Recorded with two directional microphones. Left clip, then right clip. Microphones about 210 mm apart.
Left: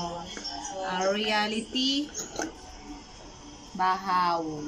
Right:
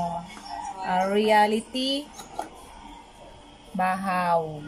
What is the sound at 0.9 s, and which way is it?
A woman's voice, 35° right (ahead or behind).